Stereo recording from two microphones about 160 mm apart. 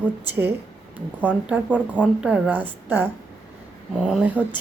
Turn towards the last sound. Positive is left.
turn(degrees=-10)  # may be behind; listen again after turning